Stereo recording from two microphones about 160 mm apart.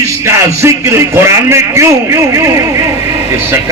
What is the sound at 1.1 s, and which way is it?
A man's voice, 15° right (ahead or behind).